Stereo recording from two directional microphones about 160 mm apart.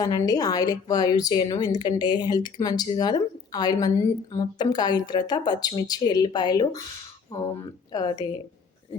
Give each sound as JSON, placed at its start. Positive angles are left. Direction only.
{"t": 0.0, "sound": "a woman's voice", "side_deg": 25}